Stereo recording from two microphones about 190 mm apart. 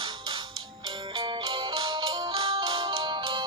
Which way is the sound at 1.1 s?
25° right (ahead or behind).